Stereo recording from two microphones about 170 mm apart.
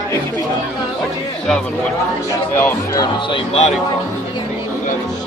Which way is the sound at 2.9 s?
25° left (ahead or behind).